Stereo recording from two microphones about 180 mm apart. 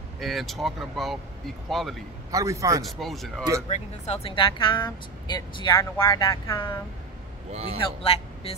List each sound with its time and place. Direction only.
0.2 s speech: centre (ahead or behind)
2.3 s a man's voice: 15° right (ahead or behind)
2.8 s speech: centre (ahead or behind)
3.6 s speech: 40° left (ahead or behind); by 6.8 s 20° left (ahead or behind)
7.5 s a man's voice: 35° right (ahead or behind)